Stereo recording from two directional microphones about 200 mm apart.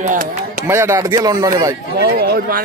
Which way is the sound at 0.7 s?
15° right (ahead or behind).